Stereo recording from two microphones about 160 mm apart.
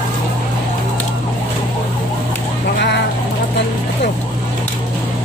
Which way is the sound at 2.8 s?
90° left.